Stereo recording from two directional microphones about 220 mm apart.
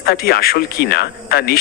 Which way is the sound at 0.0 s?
45° left (ahead or behind).